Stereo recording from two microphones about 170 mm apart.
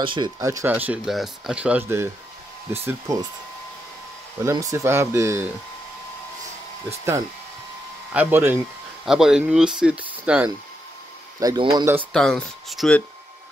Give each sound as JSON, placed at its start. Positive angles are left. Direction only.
{"t": 0.0, "sound": "speech", "side_deg": -30}
{"t": 0.4, "sound": "speech", "side_deg": -15}
{"t": 4.5, "sound": "speech", "side_deg": -20}
{"t": 8.1, "sound": "speech", "side_deg": -10}
{"t": 11.3, "sound": "speech", "side_deg": -25}
{"t": 12.1, "sound": "speech", "side_deg": 5}